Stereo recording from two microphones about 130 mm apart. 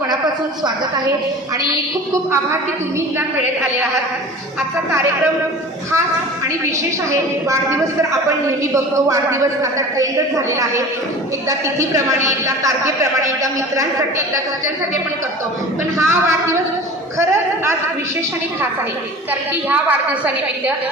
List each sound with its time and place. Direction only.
8.7 s a man's voice: 25° right (ahead or behind)
16.0 s a man's voice: 20° right (ahead or behind)